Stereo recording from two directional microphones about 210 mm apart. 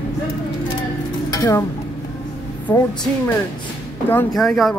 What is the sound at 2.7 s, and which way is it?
Speech, 10° left (ahead or behind).